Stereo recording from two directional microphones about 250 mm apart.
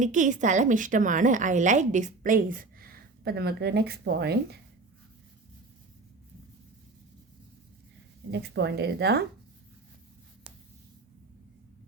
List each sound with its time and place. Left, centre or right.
0.0 s a woman's voice: right
8.3 s a woman's voice: right